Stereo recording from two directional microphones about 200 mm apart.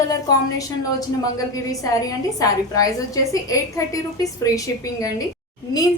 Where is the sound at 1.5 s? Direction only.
15° left (ahead or behind).